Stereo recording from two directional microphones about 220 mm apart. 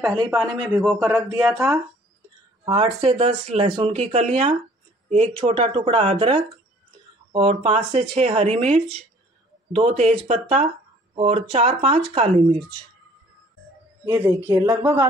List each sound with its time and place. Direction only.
0.7 s speech: 10° right (ahead or behind)
1.4 s speech: centre (ahead or behind)
2.6 s speech: 25° right (ahead or behind)
14.0 s speech: 10° right (ahead or behind)